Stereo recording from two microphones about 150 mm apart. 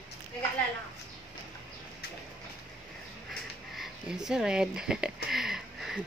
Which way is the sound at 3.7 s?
5° right (ahead or behind).